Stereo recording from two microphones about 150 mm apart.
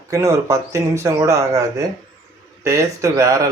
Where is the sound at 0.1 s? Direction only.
20° right (ahead or behind).